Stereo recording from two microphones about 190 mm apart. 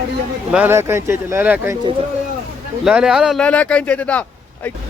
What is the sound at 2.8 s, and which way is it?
Speech, 5° right (ahead or behind).